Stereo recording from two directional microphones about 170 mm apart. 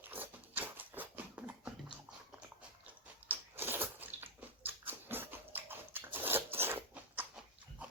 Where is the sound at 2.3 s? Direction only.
10° right (ahead or behind).